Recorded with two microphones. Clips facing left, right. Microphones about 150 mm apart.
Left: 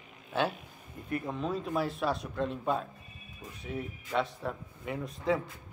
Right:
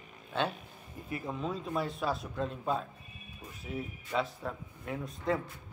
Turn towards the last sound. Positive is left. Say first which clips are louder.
# left 2 dB
turn(degrees=0)  # may be behind; listen again after turning